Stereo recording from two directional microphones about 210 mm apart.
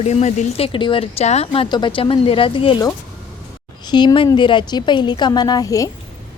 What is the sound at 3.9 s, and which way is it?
Speech, 20° left (ahead or behind).